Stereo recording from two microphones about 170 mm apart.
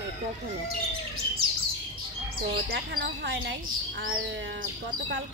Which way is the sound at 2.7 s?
65° right (ahead or behind).